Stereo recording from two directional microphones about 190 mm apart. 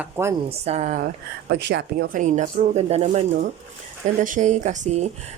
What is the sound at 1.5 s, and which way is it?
Speech, 65° right (ahead or behind).